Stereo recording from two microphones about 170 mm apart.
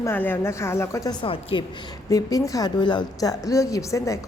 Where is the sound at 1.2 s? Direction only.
30° left (ahead or behind).